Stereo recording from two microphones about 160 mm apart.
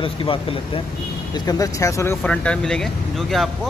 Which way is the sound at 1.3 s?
25° left (ahead or behind).